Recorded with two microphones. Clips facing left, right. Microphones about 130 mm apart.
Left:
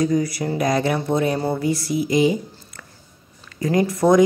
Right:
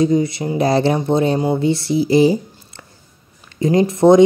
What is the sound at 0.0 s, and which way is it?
Speech, 25° right (ahead or behind).